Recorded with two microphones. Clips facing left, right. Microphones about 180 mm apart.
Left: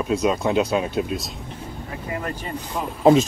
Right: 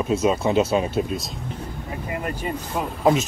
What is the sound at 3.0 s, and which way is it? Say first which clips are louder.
Speech: left 5 dB; 30° left (ahead or behind).